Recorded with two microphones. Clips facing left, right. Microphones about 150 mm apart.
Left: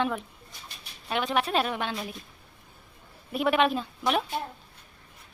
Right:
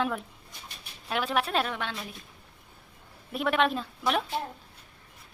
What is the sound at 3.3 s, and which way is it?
A woman's voice, 5° left (ahead or behind).